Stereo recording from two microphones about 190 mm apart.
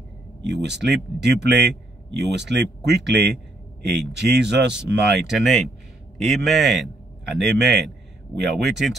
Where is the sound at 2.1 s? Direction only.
65° right (ahead or behind).